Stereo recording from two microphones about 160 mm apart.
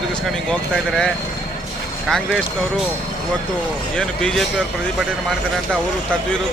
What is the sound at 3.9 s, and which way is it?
Speech, 5° left (ahead or behind).